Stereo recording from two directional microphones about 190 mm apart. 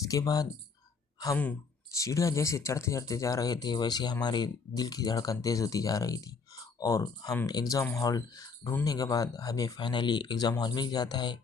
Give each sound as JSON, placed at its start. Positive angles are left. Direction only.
{"t": 0.0, "sound": "speech", "side_deg": 15}
{"t": 2.0, "sound": "speech", "side_deg": 15}